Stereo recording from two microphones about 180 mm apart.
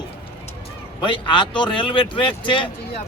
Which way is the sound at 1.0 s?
25° left (ahead or behind).